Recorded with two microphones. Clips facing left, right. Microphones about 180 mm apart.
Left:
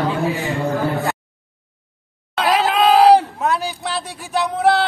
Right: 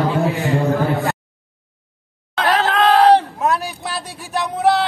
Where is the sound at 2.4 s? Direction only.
10° left (ahead or behind).